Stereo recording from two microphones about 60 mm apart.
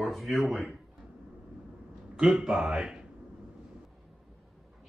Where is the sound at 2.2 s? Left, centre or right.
Centre.